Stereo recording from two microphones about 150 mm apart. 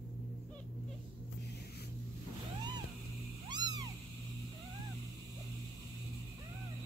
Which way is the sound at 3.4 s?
25° right (ahead or behind).